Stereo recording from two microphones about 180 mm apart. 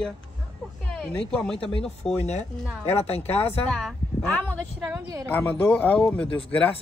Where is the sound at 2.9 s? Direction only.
35° left (ahead or behind).